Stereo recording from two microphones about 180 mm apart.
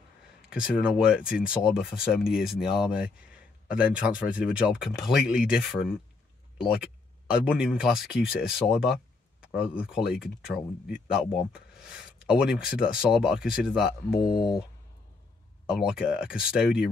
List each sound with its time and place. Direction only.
0.5 s speech: 5° right (ahead or behind)
14.2 s speech: 25° left (ahead or behind)
15.7 s speech: 5° right (ahead or behind)